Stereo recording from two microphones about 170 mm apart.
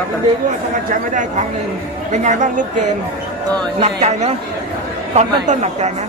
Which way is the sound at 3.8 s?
40° right (ahead or behind).